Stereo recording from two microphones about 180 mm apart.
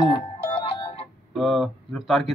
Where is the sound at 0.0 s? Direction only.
30° left (ahead or behind).